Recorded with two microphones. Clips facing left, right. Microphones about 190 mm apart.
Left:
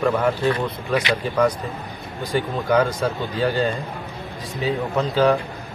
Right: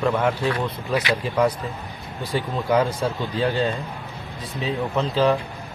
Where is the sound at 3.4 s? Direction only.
Centre (ahead or behind).